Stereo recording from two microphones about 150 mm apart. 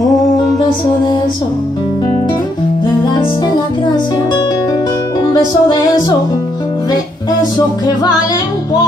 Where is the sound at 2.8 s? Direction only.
30° left (ahead or behind).